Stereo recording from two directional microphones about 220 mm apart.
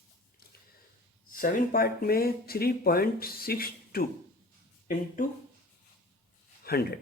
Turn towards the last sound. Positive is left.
turn(degrees=45)  # may be behind; listen again after turning